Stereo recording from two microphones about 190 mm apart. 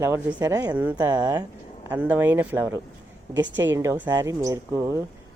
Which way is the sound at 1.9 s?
10° right (ahead or behind).